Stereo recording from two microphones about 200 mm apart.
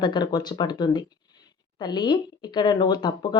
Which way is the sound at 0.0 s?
20° left (ahead or behind).